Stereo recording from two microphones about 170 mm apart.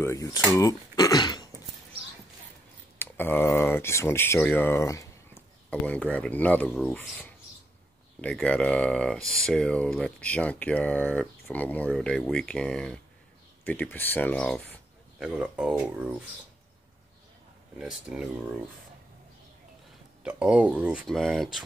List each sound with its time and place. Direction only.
0.0 s speech: 20° left (ahead or behind)
3.0 s speech: 10° left (ahead or behind)
15.1 s speech: 5° right (ahead or behind)
20.2 s speech: 5° right (ahead or behind)